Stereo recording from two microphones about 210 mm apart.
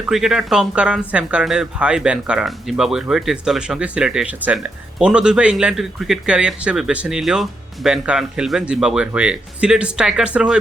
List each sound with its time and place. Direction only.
0.0 s speech: centre (ahead or behind)